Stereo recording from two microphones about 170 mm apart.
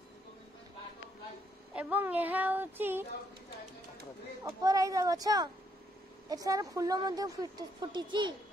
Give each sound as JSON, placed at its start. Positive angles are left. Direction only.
{"t": 1.7, "sound": "a woman's voice", "side_deg": -10}
{"t": 4.5, "sound": "a woman's voice", "side_deg": -20}